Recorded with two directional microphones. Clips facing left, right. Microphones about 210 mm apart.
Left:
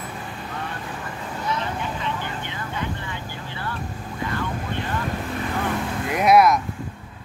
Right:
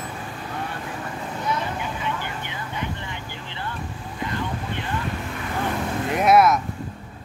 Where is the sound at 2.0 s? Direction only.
15° right (ahead or behind).